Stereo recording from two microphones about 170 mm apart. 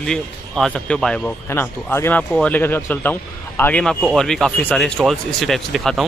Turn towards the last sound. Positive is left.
turn(degrees=0)  # may be behind; listen again after turning